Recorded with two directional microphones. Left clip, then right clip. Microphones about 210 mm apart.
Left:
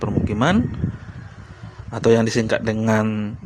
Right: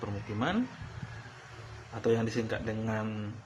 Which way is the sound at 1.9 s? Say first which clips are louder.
Left 13 dB; 50° left (ahead or behind).